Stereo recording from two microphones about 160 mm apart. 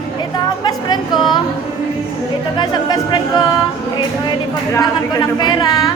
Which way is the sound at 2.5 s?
25° left (ahead or behind).